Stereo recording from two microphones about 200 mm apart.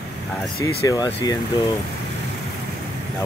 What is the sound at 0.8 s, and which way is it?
Speech, 15° left (ahead or behind).